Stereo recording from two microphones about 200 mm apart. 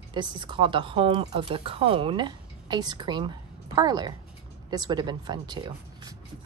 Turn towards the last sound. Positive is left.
turn(degrees=-20)  # may be behind; listen again after turning